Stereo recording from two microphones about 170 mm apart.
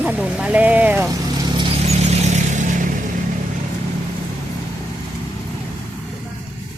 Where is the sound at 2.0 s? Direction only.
40° right (ahead or behind).